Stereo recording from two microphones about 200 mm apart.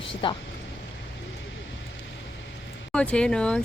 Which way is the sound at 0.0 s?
25° left (ahead or behind).